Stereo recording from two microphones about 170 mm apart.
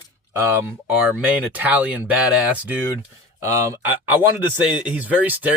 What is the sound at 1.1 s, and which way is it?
Speech, 10° right (ahead or behind).